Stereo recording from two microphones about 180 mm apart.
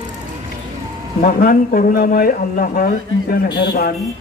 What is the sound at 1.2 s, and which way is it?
A man's voice, 50° left (ahead or behind).